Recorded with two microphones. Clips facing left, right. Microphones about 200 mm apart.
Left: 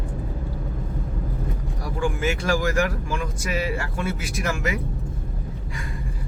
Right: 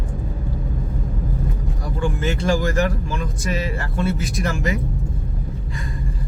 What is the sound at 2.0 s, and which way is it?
Speech, 10° left (ahead or behind).